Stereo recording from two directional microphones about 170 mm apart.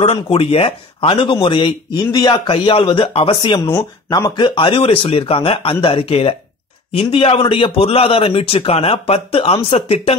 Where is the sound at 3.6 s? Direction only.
15° left (ahead or behind).